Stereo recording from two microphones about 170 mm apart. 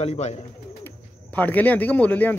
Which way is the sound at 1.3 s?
10° left (ahead or behind).